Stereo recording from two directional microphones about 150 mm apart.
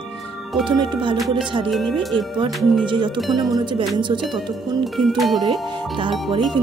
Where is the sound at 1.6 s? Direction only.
Centre (ahead or behind).